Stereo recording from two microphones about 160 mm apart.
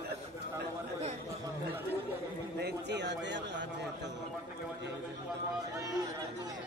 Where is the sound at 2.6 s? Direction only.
90° right.